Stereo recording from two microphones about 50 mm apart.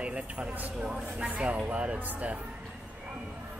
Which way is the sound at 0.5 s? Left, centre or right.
Right.